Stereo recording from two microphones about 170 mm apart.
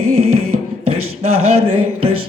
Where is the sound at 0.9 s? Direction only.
35° right (ahead or behind).